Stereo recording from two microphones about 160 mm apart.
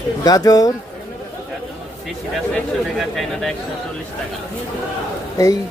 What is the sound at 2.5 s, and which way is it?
Speech, centre (ahead or behind).